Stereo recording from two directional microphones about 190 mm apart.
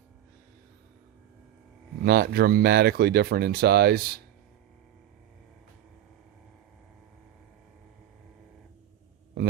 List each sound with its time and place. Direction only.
2.0 s speech: 55° right (ahead or behind)